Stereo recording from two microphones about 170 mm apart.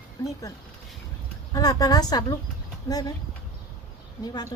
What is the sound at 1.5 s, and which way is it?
Speech, 20° left (ahead or behind).